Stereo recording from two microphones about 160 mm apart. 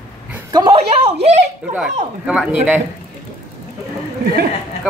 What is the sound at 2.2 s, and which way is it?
Speech, 5° right (ahead or behind).